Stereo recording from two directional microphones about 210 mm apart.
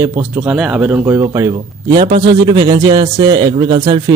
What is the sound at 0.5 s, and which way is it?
A man's voice, 5° right (ahead or behind).